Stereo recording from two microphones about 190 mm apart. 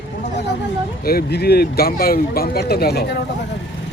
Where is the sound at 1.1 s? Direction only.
55° left (ahead or behind).